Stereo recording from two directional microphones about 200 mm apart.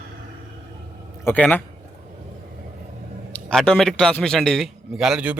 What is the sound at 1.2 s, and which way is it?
Speech, 10° left (ahead or behind).